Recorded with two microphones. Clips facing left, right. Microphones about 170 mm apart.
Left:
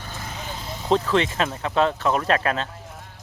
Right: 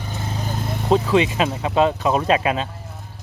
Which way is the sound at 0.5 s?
55° right (ahead or behind).